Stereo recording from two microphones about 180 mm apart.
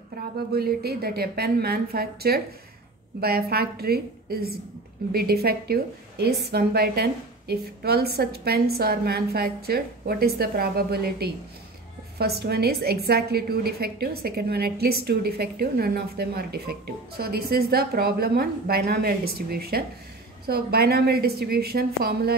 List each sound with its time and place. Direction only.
0.5 s a woman's voice: 60° right (ahead or behind)